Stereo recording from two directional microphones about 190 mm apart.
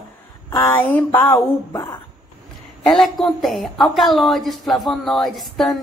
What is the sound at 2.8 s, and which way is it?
A woman's voice, centre (ahead or behind).